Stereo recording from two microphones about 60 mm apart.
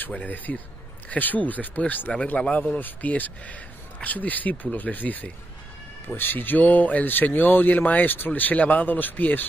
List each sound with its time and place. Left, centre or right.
0.1 s speech: left